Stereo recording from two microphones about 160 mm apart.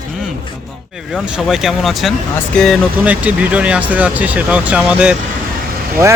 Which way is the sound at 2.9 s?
10° right (ahead or behind).